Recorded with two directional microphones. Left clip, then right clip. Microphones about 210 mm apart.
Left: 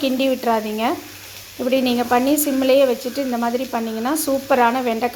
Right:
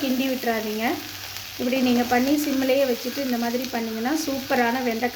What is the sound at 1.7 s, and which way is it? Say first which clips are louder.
Frying: left 4 dB; 15° left (ahead or behind).